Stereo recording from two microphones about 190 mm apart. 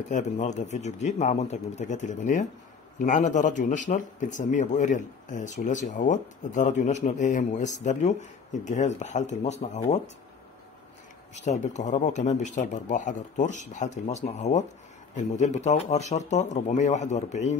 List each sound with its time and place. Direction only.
0.1 s speech: 40° left (ahead or behind)
11.3 s speech: 40° left (ahead or behind)